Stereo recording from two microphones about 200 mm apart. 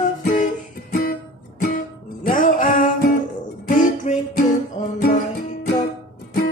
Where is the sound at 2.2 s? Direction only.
40° left (ahead or behind).